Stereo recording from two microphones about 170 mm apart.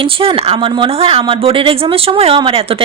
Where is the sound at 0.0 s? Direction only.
30° right (ahead or behind).